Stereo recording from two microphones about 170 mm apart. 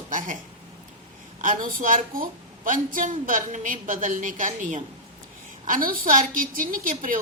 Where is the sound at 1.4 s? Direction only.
50° right (ahead or behind).